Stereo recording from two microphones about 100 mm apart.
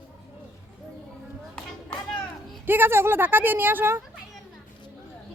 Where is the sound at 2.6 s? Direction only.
20° right (ahead or behind).